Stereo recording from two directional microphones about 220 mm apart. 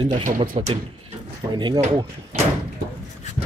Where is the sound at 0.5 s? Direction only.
25° right (ahead or behind).